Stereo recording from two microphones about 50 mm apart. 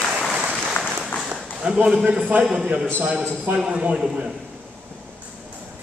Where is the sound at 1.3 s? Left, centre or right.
Right.